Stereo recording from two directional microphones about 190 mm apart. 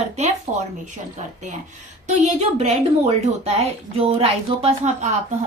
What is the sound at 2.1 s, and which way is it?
A woman's voice, 40° right (ahead or behind).